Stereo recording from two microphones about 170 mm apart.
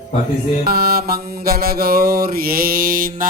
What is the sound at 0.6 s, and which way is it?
Mantra, 65° right (ahead or behind).